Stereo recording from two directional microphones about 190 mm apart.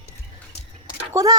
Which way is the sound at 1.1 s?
20° right (ahead or behind).